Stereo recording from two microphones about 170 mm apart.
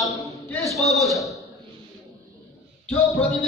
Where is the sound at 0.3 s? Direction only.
15° left (ahead or behind).